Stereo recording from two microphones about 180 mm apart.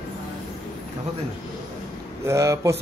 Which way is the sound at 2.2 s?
15° right (ahead or behind).